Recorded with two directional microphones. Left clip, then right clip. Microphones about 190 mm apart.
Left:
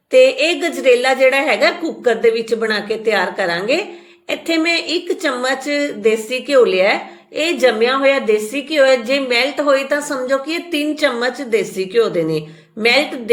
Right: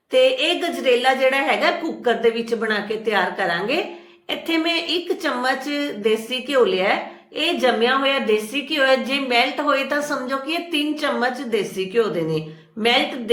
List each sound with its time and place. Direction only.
0.1 s a woman's voice: 20° left (ahead or behind)